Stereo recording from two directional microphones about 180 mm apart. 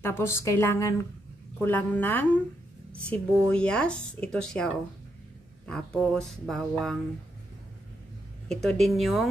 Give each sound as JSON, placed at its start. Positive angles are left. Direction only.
{"t": 0.0, "sound": "a woman's voice", "side_deg": 15}
{"t": 8.5, "sound": "speech", "side_deg": 0}